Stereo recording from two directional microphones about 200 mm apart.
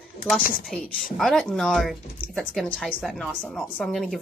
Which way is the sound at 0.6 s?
Centre (ahead or behind).